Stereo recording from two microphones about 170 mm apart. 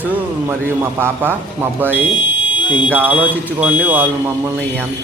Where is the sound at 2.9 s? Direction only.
10° right (ahead or behind).